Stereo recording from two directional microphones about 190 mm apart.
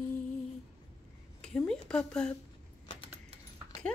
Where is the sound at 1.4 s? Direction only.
5° left (ahead or behind).